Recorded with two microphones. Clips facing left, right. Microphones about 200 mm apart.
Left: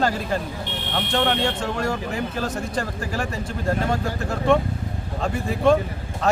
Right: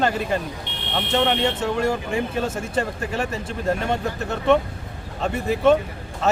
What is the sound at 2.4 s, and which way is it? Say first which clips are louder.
Speech: right 2 dB; 25° right (ahead or behind).